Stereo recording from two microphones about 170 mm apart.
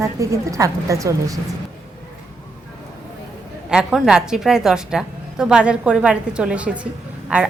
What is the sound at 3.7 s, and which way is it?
A woman's voice, 5° right (ahead or behind).